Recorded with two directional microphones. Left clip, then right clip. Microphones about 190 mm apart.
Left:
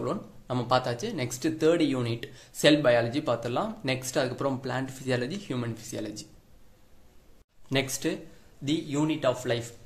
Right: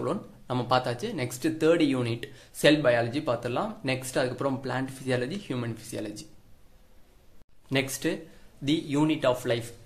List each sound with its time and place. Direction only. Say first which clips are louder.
0.0 s speech: right 1 dB; 10° right (ahead or behind)
7.7 s speech: even; 5° right (ahead or behind)
8.6 s speech: right 2 dB; 20° right (ahead or behind)